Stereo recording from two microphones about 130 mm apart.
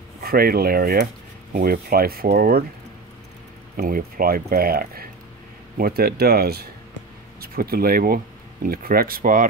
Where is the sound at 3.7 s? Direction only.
90° right.